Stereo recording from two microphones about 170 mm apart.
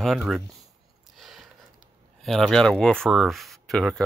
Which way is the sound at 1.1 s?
Centre (ahead or behind).